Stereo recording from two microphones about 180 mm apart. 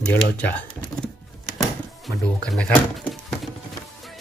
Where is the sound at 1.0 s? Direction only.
5° left (ahead or behind).